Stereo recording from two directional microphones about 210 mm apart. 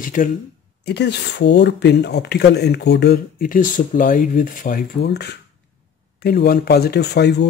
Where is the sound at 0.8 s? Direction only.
55° left (ahead or behind).